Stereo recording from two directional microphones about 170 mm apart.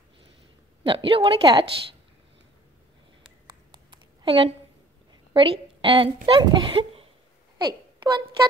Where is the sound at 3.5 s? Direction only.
30° right (ahead or behind).